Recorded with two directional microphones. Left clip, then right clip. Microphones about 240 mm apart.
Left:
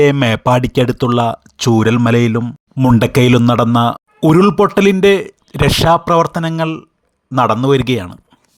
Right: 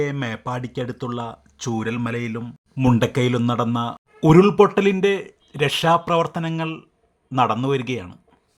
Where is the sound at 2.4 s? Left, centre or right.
Left.